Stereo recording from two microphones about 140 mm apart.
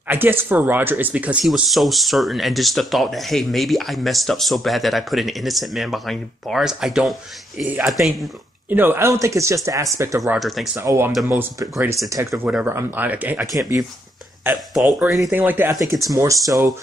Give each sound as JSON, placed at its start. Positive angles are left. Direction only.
{"t": 0.1, "sound": "speech", "side_deg": -15}
{"t": 8.6, "sound": "speech", "side_deg": -15}
{"t": 10.3, "sound": "speech", "side_deg": 0}
{"t": 10.8, "sound": "speech", "side_deg": -15}
{"t": 14.4, "sound": "speech", "side_deg": -10}
{"t": 15.0, "sound": "speech", "side_deg": 0}
{"t": 15.3, "sound": "speech", "side_deg": -15}